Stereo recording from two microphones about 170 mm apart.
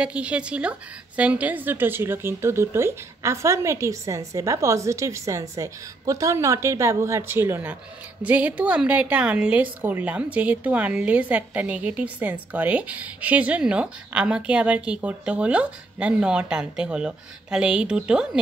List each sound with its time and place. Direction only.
0.0 s a woman's voice: 5° right (ahead or behind)